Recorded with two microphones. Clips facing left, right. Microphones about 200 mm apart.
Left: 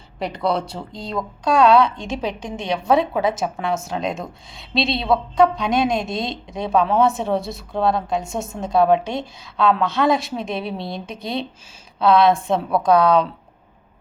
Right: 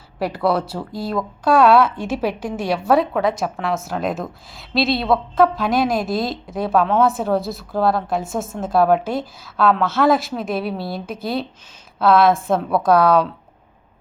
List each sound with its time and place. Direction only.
0.2 s a woman's voice: 5° right (ahead or behind)